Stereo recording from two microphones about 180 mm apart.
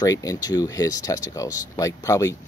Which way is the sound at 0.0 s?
20° left (ahead or behind).